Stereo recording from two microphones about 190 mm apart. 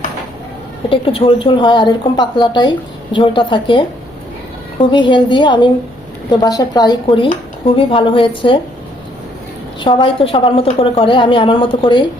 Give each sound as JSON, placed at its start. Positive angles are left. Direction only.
{"t": 0.9, "sound": "a woman's voice", "side_deg": 30}
{"t": 9.8, "sound": "a woman's voice", "side_deg": 25}